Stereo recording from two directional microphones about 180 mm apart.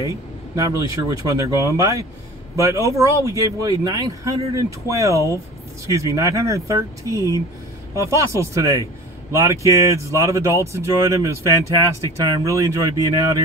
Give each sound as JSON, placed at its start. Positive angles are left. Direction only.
{"t": 0.6, "sound": "speech", "side_deg": -20}